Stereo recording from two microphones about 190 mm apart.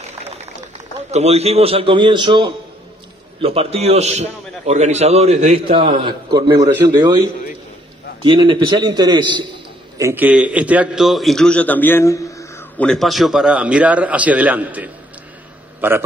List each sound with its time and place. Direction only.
1.1 s a man's voice: 35° right (ahead or behind)
8.2 s a man's voice: 25° right (ahead or behind)
9.9 s a man's voice: 10° right (ahead or behind)